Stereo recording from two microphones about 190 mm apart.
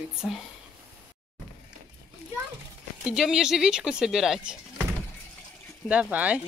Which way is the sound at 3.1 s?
5° right (ahead or behind).